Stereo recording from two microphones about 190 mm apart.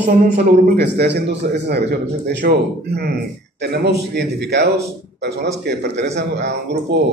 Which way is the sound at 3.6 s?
60° right (ahead or behind).